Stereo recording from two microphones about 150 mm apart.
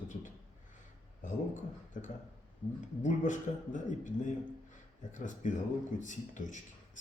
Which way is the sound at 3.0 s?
55° left (ahead or behind).